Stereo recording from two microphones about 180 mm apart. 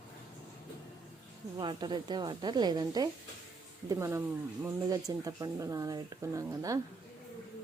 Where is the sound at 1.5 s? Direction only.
25° right (ahead or behind).